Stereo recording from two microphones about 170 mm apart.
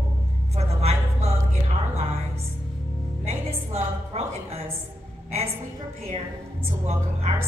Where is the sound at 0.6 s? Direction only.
40° right (ahead or behind).